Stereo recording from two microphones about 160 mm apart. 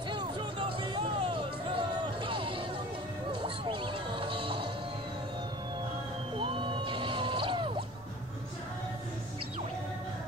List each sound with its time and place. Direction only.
0.1 s music: 30° right (ahead or behind)
6.3 s music: 30° right (ahead or behind)